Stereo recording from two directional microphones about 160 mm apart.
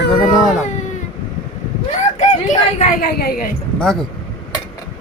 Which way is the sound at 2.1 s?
45° left (ahead or behind).